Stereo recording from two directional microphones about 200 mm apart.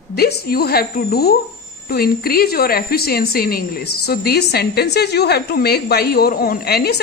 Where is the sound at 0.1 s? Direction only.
50° left (ahead or behind).